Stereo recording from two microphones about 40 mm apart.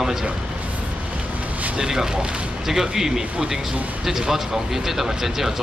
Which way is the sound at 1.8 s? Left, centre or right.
Centre.